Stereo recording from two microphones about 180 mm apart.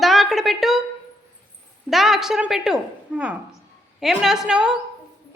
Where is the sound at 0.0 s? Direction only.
Centre (ahead or behind).